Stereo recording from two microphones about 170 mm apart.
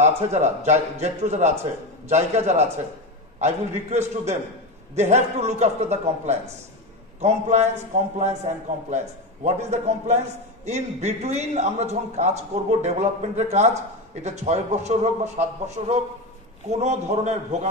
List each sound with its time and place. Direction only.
0.0 s a man's voice: 40° right (ahead or behind)